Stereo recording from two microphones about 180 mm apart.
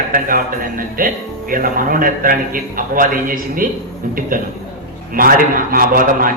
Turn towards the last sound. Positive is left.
turn(degrees=-50)  # may be behind; listen again after turning